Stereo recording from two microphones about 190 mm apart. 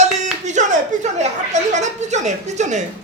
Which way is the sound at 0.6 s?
40° right (ahead or behind).